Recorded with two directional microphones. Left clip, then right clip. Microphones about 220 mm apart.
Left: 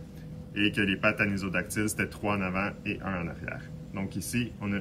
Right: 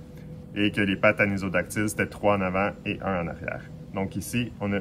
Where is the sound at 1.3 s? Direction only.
25° right (ahead or behind).